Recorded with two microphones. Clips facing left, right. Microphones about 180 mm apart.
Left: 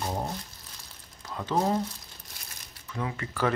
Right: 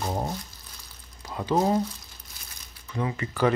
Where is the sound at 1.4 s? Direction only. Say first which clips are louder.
Right 3 dB; 5° right (ahead or behind).